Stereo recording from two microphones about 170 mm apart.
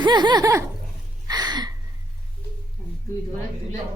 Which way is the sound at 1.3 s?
25° right (ahead or behind).